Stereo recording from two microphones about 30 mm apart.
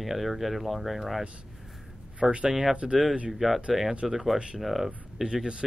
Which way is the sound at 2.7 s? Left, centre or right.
Right.